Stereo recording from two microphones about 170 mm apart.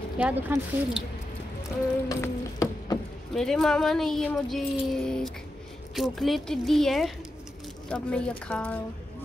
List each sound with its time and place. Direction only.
0.2 s speech: 10° right (ahead or behind)
2.0 s music: 20° left (ahead or behind)
3.3 s a woman's voice: 5° left (ahead or behind)